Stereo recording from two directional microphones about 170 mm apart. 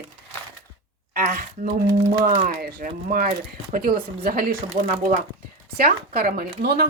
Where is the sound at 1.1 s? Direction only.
50° right (ahead or behind).